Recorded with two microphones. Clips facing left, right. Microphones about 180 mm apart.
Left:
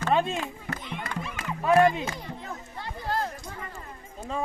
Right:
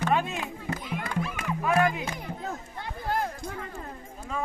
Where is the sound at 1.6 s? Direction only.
25° left (ahead or behind).